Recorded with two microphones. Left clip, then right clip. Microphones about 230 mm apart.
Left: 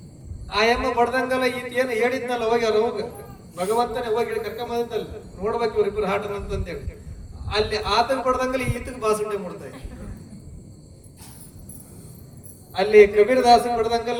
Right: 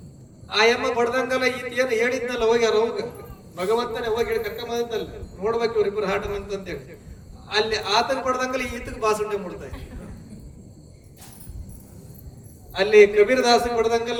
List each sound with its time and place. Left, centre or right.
0.5 s a man's voice: right
12.7 s a man's voice: right